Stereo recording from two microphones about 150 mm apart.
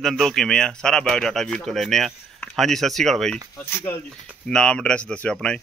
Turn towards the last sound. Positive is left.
turn(degrees=5)  # may be behind; listen again after turning